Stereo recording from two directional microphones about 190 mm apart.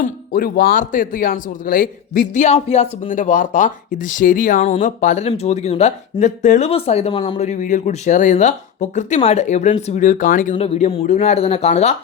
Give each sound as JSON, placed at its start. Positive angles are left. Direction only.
{"t": 0.0, "sound": "speech", "side_deg": 50}
{"t": 10.5, "sound": "speech", "side_deg": 30}